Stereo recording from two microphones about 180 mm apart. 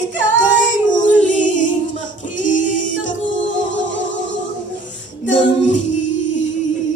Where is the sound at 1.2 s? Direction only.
45° left (ahead or behind).